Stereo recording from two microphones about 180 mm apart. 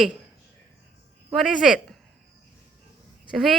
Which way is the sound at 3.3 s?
Centre (ahead or behind).